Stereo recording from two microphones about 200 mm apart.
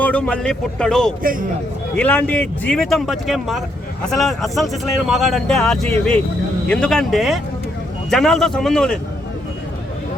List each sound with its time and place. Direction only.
0.0 s speech: 5° left (ahead or behind)
1.2 s a man's voice: 45° right (ahead or behind)
2.0 s speech: 5° left (ahead or behind)